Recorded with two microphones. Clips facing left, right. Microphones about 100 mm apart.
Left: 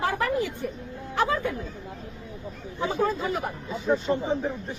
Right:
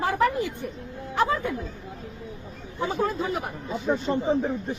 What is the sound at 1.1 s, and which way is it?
Speech, 15° right (ahead or behind).